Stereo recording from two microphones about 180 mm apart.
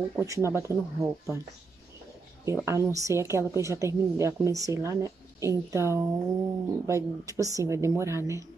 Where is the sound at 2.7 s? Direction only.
15° right (ahead or behind).